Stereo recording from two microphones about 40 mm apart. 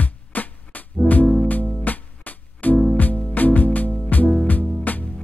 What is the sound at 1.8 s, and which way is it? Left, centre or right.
Music, left.